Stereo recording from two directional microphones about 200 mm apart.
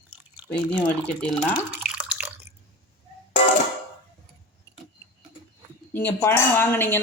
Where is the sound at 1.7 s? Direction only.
10° right (ahead or behind).